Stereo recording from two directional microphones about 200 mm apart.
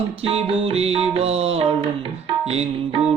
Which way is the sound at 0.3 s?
30° right (ahead or behind).